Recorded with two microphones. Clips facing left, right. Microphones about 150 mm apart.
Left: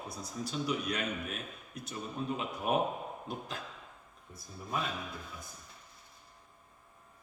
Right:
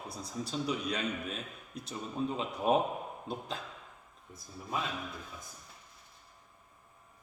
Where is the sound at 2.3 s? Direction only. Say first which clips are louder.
Right 4 dB; 30° right (ahead or behind).